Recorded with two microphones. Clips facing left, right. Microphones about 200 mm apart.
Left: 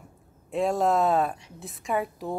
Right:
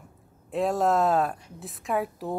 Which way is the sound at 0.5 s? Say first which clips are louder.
Even; centre (ahead or behind).